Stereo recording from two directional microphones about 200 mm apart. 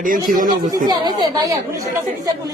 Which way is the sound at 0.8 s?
20° right (ahead or behind).